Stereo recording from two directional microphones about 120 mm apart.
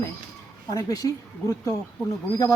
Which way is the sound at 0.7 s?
30° left (ahead or behind).